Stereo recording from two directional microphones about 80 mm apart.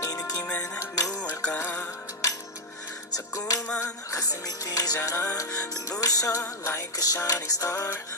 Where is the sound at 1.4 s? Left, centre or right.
Centre.